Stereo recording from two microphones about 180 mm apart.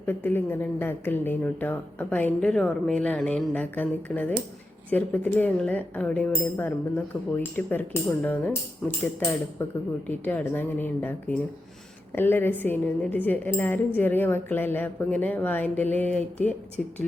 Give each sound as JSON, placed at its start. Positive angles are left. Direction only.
{"t": 0.0, "sound": "a woman's voice", "side_deg": 10}
{"t": 9.6, "sound": "a woman's voice", "side_deg": 10}